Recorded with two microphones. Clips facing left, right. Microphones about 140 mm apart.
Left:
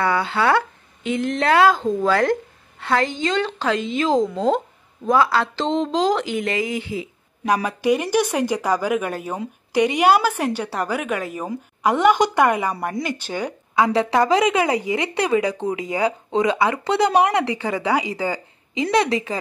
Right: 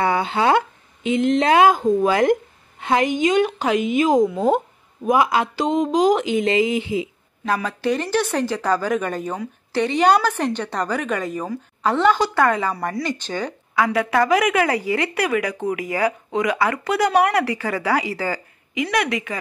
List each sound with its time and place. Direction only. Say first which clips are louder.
0.0 s speech: right 1 dB; 20° right (ahead or behind)
7.4 s a woman's voice: left 2 dB; 15° left (ahead or behind)
13.7 s a woman's voice: left 1 dB; 20° left (ahead or behind)